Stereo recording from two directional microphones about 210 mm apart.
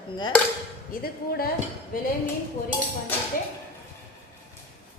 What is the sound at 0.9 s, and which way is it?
Speech, 45° left (ahead or behind).